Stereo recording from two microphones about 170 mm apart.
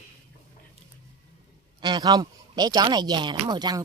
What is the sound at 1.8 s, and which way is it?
Speech, 25° right (ahead or behind).